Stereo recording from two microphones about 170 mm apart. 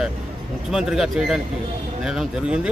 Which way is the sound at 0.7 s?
5° right (ahead or behind).